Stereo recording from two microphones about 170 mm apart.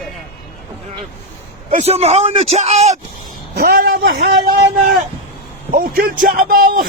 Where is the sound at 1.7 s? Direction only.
35° right (ahead or behind).